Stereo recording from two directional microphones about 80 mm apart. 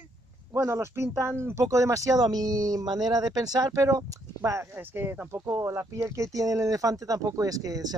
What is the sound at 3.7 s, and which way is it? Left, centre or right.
Speech, right.